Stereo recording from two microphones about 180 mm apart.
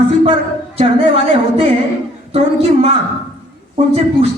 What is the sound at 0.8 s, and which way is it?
Speech, 30° right (ahead or behind).